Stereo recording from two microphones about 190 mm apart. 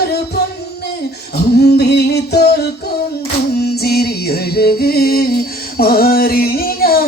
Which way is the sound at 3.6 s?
55° left (ahead or behind).